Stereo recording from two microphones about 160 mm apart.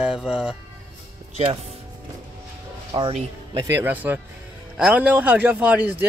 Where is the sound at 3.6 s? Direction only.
15° right (ahead or behind).